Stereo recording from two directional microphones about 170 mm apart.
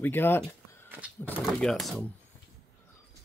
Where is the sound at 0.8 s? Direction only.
10° right (ahead or behind).